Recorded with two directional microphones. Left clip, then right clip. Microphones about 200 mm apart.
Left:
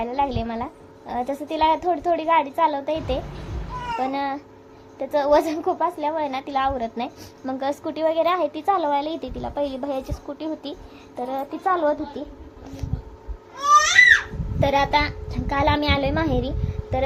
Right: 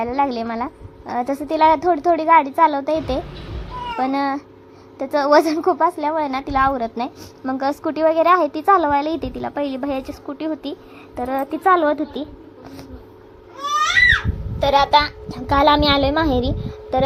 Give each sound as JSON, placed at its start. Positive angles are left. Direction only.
{"t": 0.0, "sound": "a woman's voice", "side_deg": -20}
{"t": 14.6, "sound": "a woman's voice", "side_deg": -25}